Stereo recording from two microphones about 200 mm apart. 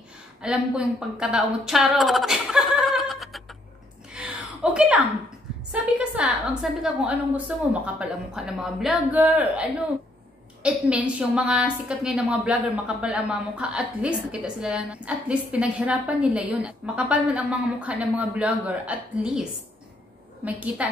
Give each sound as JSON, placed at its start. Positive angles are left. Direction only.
{"t": 0.4, "sound": "speech", "side_deg": -5}
{"t": 4.1, "sound": "a sound", "side_deg": -5}
{"t": 5.7, "sound": "a woman's voice", "side_deg": -5}
{"t": 20.4, "sound": "a woman's voice", "side_deg": -5}